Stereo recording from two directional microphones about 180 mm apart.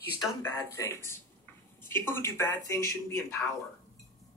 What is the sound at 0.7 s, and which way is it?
Speech, 15° left (ahead or behind).